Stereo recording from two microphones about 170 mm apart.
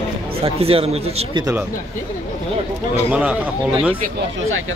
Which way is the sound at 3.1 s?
5° right (ahead or behind).